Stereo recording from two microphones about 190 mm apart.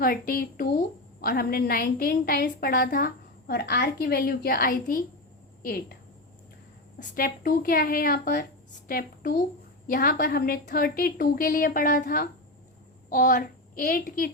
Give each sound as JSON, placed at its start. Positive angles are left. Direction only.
{"t": 0.0, "sound": "a woman's voice", "side_deg": 50}
{"t": 7.2, "sound": "a woman's voice", "side_deg": 50}